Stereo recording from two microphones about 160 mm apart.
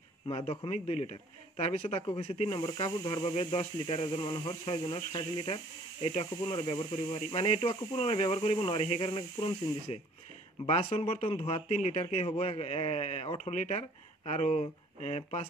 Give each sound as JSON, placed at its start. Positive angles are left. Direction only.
{"t": 0.3, "sound": "a man's voice", "side_deg": 35}